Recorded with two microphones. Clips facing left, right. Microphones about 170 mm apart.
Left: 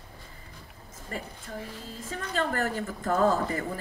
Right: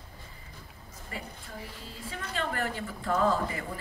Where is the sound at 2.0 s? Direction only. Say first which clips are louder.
Left 4 dB; 45° left (ahead or behind).